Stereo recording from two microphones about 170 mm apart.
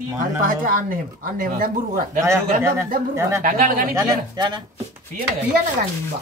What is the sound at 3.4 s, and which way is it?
Speech, 55° right (ahead or behind).